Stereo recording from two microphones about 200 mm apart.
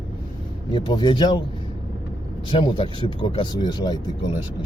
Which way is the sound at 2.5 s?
25° left (ahead or behind).